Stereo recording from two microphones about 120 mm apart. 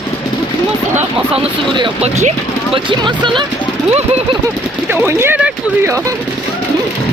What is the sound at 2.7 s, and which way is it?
Speech, 45° right (ahead or behind).